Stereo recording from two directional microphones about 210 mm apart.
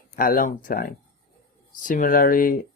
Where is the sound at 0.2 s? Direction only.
40° left (ahead or behind).